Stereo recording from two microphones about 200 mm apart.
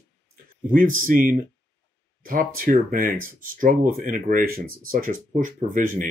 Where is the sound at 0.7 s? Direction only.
45° right (ahead or behind).